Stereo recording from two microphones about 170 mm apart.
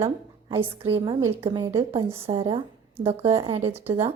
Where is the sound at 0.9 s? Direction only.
35° right (ahead or behind).